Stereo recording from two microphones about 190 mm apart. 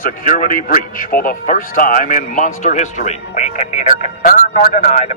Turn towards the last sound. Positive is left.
turn(degrees=35)  # may be behind; listen again after turning